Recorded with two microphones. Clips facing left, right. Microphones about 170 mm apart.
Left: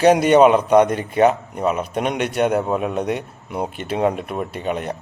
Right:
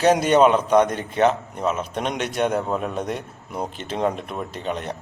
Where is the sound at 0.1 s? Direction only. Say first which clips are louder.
Left 4 dB; 60° left (ahead or behind).